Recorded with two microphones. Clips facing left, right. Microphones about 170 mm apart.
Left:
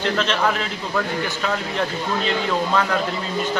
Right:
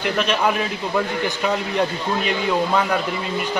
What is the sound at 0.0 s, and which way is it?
A man's voice, 15° right (ahead or behind).